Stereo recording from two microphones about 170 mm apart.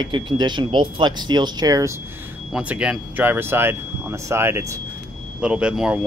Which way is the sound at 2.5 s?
5° right (ahead or behind).